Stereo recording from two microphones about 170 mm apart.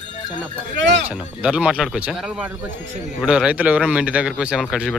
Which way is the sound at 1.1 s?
5° right (ahead or behind).